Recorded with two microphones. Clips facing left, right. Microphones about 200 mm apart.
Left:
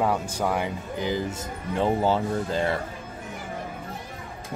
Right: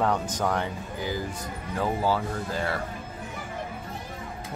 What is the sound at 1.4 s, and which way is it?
Speech, 25° left (ahead or behind).